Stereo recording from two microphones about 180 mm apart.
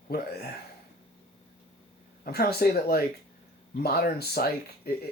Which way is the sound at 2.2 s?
60° left (ahead or behind).